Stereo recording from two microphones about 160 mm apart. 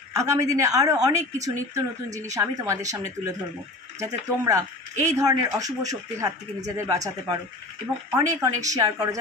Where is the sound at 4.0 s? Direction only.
20° right (ahead or behind).